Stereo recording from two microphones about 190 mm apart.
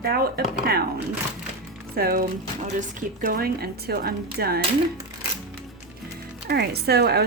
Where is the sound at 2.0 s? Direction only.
50° right (ahead or behind).